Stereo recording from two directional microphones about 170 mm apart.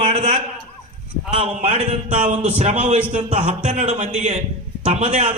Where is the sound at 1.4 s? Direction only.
40° right (ahead or behind).